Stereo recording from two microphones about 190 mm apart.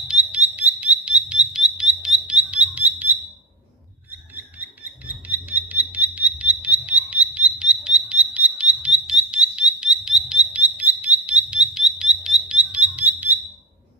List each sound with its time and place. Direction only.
0.1 s frog: 5° right (ahead or behind)
4.6 s a sound: 10° right (ahead or behind)
8.8 s frog: 5° right (ahead or behind)